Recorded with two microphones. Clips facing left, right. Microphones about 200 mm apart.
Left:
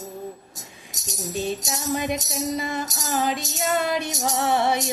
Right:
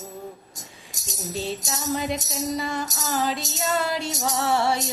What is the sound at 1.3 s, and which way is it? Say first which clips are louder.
Music: left 2 dB; 15° left (ahead or behind).